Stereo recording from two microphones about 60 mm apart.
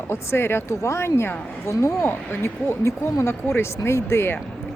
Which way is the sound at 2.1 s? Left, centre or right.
Left.